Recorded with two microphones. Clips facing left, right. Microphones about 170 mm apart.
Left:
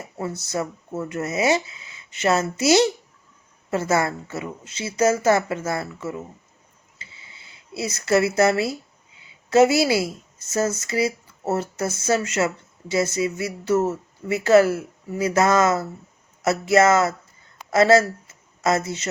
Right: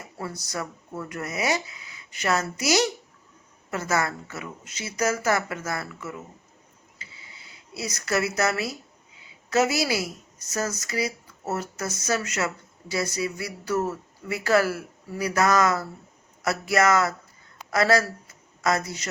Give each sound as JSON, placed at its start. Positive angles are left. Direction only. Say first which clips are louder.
{"t": 0.2, "sound": "speech", "louder": "left 6 dB", "side_deg": 25}
{"t": 7.0, "sound": "a sound", "louder": "left 1 dB", "side_deg": 25}
{"t": 9.5, "sound": "speech", "louder": "left 7 dB", "side_deg": 25}